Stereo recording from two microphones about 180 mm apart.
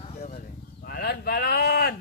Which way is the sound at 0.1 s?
35° left (ahead or behind).